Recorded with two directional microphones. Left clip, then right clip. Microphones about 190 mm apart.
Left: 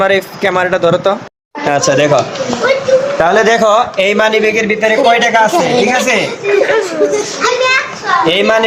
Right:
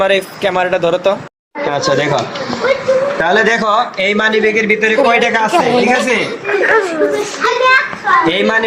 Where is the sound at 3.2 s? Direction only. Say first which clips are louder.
Left 3 dB; 40° left (ahead or behind).